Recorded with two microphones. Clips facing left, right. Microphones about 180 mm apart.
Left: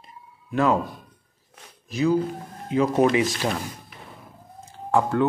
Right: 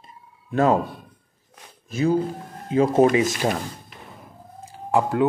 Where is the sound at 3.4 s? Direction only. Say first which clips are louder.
Right 3 dB; 30° right (ahead or behind).